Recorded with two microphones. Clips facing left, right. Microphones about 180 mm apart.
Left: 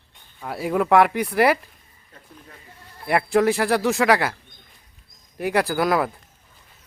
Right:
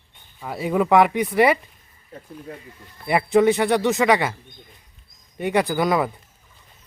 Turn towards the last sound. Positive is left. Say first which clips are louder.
# even
turn(degrees=0)  # may be behind; listen again after turning